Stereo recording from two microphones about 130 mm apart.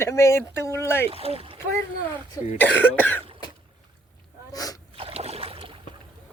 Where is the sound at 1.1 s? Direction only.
50° right (ahead or behind).